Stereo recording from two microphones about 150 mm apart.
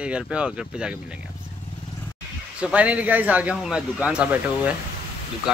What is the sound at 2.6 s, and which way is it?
Speech, 10° right (ahead or behind).